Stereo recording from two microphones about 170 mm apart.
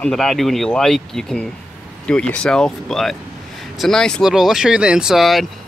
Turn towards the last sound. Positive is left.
turn(degrees=0)  # may be behind; listen again after turning